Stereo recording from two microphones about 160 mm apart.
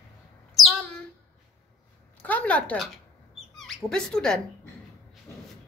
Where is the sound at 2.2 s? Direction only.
10° left (ahead or behind).